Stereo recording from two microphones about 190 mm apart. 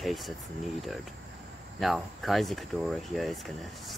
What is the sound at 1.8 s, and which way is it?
Speech, centre (ahead or behind).